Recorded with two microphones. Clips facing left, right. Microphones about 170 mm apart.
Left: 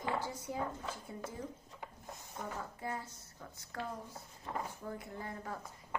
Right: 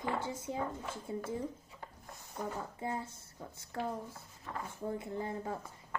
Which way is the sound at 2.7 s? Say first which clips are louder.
Right 3 dB; 25° right (ahead or behind).